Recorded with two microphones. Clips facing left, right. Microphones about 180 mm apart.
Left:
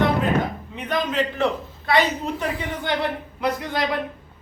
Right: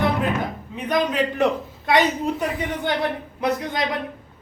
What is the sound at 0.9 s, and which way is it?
Speech, 15° right (ahead or behind).